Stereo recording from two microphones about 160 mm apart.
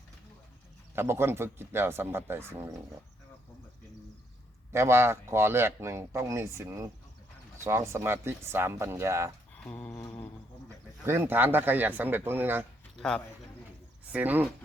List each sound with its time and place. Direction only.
0.9 s a man's voice: 15° right (ahead or behind)
4.7 s a man's voice: 15° right (ahead or behind)
9.6 s a sound: 10° left (ahead or behind)
11.0 s a man's voice: 15° right (ahead or behind)
13.0 s speech: 5° left (ahead or behind)
14.1 s a man's voice: 10° right (ahead or behind)